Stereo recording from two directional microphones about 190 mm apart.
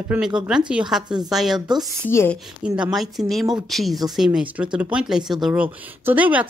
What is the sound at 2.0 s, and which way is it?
Speech, 10° left (ahead or behind).